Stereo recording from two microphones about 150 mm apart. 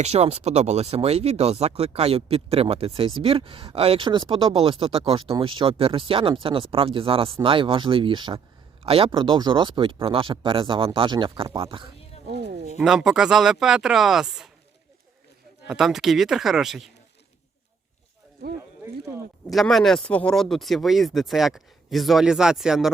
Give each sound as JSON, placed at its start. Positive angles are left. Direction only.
{"t": 0.0, "sound": "speech", "side_deg": -45}
{"t": 12.8, "sound": "speech", "side_deg": -5}
{"t": 15.6, "sound": "speech", "side_deg": -5}
{"t": 19.5, "sound": "speech", "side_deg": 0}